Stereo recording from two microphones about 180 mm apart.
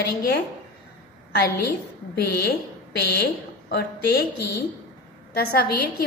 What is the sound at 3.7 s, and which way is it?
Speech, 65° left (ahead or behind).